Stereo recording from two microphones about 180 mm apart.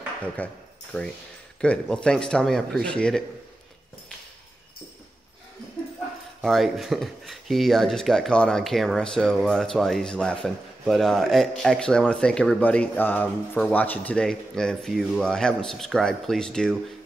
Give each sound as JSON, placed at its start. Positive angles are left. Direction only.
{"t": 0.4, "sound": "speech", "side_deg": 10}
{"t": 6.4, "sound": "speech", "side_deg": 0}